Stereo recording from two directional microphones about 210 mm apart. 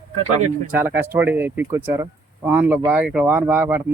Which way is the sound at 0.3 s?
35° right (ahead or behind).